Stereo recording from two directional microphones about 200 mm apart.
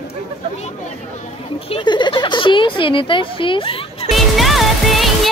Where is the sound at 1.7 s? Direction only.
25° left (ahead or behind).